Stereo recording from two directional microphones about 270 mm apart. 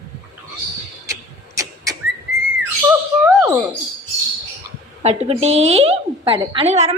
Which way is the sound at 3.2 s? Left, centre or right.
Centre.